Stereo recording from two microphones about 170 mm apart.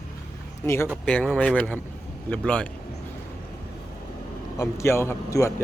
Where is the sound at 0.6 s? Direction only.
15° left (ahead or behind).